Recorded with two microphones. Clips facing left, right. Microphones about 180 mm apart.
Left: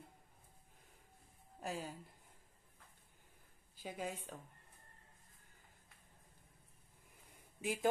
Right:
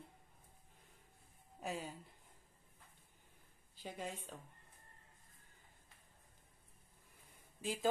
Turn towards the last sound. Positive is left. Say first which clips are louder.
# left 1 dB
turn(degrees=15)  # may be behind; listen again after turning